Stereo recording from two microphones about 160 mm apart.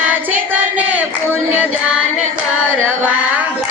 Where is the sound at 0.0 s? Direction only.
10° right (ahead or behind).